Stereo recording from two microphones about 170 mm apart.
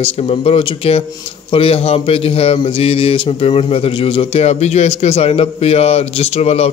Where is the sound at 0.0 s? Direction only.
35° left (ahead or behind).